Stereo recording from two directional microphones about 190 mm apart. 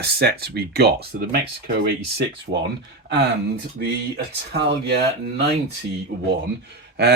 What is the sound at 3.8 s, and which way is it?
Speech, 60° right (ahead or behind).